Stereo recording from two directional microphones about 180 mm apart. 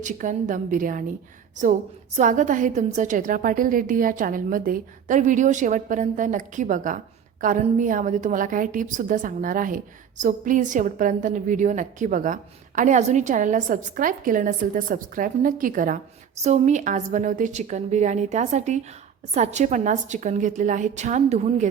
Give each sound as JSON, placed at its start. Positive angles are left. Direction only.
{"t": 0.0, "sound": "a woman's voice", "side_deg": -45}
{"t": 2.1, "sound": "a woman's voice", "side_deg": -45}